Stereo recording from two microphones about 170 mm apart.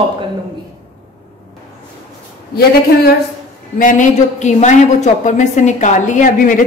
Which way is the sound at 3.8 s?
50° left (ahead or behind).